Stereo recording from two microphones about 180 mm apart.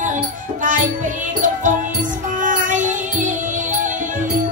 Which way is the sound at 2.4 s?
45° right (ahead or behind).